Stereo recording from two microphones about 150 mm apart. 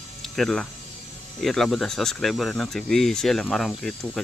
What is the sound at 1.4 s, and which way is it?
Speech, centre (ahead or behind).